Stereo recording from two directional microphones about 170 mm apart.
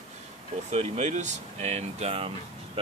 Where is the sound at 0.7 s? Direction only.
40° right (ahead or behind).